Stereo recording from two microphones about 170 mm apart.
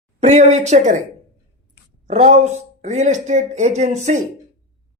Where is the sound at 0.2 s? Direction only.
40° right (ahead or behind).